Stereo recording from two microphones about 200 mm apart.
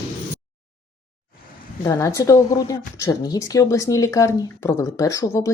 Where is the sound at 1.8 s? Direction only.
15° left (ahead or behind).